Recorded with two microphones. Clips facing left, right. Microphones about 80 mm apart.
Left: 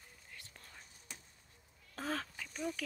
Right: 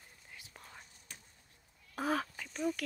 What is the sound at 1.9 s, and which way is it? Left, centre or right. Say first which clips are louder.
Duck: right 6 dB; centre.